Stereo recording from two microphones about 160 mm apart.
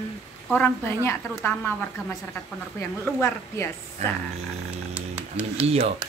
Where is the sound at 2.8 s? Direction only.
15° left (ahead or behind).